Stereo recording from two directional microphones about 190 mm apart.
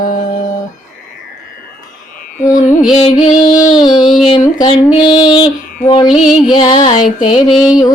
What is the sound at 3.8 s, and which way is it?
Child singing, 20° left (ahead or behind).